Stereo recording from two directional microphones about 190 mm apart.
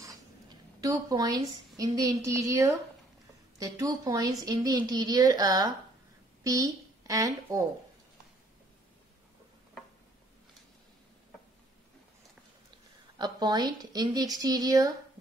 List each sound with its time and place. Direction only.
0.7 s a woman's voice: 20° right (ahead or behind)
13.2 s a woman's voice: 20° right (ahead or behind)